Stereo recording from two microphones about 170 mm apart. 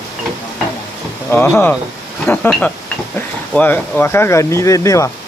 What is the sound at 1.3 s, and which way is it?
Speech, 15° left (ahead or behind).